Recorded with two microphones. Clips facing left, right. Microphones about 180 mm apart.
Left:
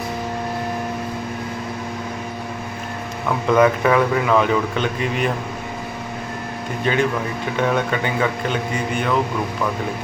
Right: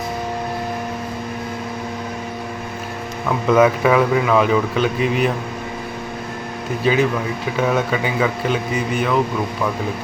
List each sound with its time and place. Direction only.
3.5 s speech: 5° right (ahead or behind)
6.9 s speech: 5° right (ahead or behind)